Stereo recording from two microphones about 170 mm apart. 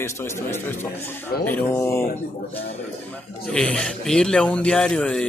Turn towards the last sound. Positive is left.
turn(degrees=5)  # may be behind; listen again after turning